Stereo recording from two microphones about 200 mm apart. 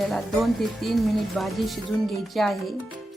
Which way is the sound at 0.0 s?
Centre (ahead or behind).